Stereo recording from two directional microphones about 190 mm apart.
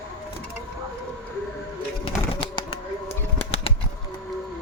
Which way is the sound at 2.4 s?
30° left (ahead or behind).